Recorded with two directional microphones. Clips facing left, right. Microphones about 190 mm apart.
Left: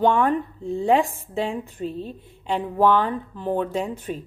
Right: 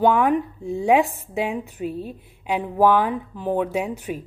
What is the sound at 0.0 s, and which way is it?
A woman's voice, 10° right (ahead or behind).